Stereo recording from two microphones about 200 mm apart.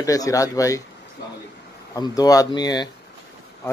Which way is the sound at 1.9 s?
20° left (ahead or behind).